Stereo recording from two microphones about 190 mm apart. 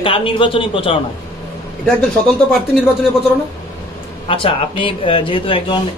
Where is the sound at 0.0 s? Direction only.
25° left (ahead or behind).